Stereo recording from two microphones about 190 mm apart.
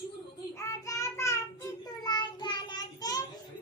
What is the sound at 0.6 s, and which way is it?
Child singing, 15° left (ahead or behind).